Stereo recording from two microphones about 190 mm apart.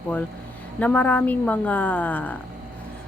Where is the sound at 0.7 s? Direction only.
10° left (ahead or behind).